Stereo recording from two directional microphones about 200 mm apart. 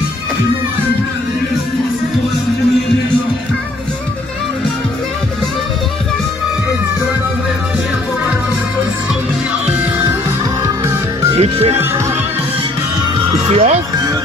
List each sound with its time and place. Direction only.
9.7 s music: 10° right (ahead or behind)
11.3 s music: 30° right (ahead or behind)
13.5 s speech: 30° right (ahead or behind)